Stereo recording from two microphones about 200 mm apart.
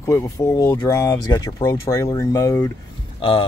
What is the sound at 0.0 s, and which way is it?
Speech, 15° left (ahead or behind).